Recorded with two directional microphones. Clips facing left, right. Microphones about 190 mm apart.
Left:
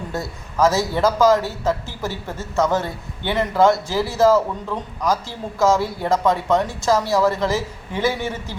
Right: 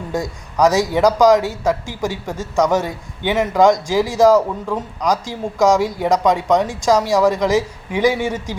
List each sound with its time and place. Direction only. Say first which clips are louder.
0.1 s a man's voice: right 5 dB; 15° right (ahead or behind)